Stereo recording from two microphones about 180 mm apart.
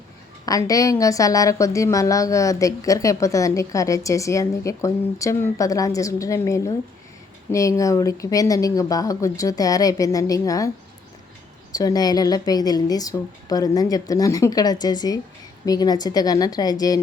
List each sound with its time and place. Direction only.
0.4 s a woman's voice: 20° left (ahead or behind)
11.7 s a woman's voice: 20° left (ahead or behind)